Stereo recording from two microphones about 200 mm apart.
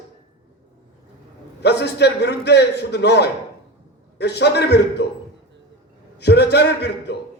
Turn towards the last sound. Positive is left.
turn(degrees=55)  # may be behind; listen again after turning